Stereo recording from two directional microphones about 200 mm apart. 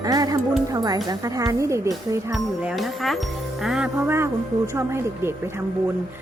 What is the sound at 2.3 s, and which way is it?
Speech, centre (ahead or behind).